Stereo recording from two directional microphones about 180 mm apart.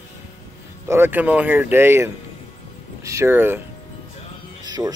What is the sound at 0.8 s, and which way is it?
Speech, 10° right (ahead or behind).